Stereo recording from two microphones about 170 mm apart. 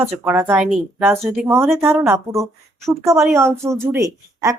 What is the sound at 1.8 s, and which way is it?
Speech, 15° right (ahead or behind).